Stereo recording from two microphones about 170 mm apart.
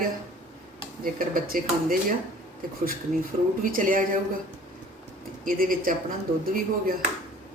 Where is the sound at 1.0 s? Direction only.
55° right (ahead or behind).